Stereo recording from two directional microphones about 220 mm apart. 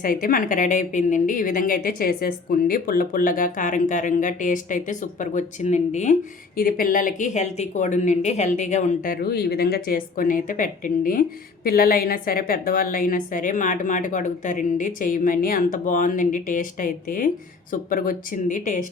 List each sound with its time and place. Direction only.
0.0 s speech: 40° left (ahead or behind)